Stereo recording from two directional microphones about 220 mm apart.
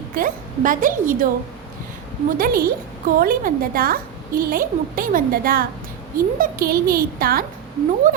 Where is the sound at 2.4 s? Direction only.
40° right (ahead or behind).